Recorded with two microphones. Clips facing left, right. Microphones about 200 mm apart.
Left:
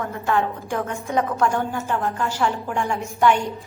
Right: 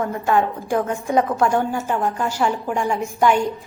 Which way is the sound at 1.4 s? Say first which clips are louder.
Right 3 dB; 15° right (ahead or behind).